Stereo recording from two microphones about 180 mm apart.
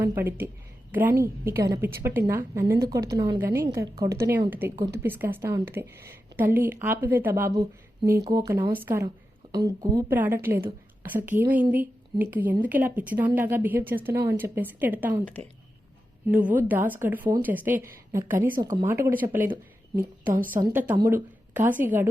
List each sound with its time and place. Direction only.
0.2 s a woman's voice: 10° right (ahead or behind)
8.7 s a woman's voice: 10° right (ahead or behind)
15.2 s speech: 10° left (ahead or behind)
16.3 s a woman's voice: 10° right (ahead or behind)
20.6 s speech: 20° right (ahead or behind)
21.5 s a woman's voice: 10° right (ahead or behind)